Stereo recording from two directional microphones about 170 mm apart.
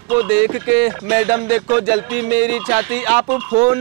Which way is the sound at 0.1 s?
10° right (ahead or behind).